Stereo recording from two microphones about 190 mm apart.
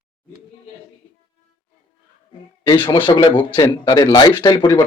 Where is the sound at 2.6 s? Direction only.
25° left (ahead or behind).